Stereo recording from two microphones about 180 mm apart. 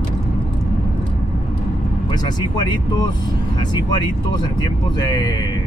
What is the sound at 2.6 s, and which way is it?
Speech, 25° left (ahead or behind).